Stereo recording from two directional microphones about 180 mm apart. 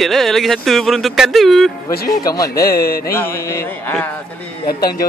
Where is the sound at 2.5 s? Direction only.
55° left (ahead or behind).